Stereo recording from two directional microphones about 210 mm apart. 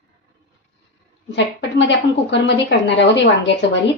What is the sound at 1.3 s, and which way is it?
A woman's voice, 55° left (ahead or behind).